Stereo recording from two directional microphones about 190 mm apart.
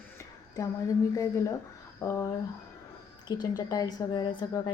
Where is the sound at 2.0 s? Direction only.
10° left (ahead or behind).